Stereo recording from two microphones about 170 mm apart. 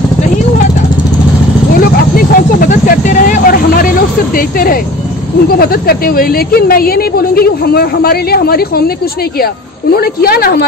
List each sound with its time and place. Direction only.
1.8 s vehicle: 60° left (ahead or behind)
5.6 s a woman's voice: 60° left (ahead or behind)